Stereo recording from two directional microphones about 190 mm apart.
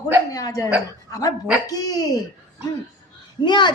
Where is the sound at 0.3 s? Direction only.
20° left (ahead or behind).